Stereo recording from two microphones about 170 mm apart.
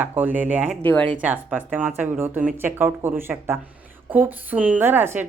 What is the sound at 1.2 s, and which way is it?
A woman's voice, 10° right (ahead or behind).